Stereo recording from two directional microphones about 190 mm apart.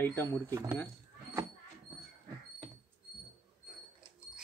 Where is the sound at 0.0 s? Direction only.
10° left (ahead or behind).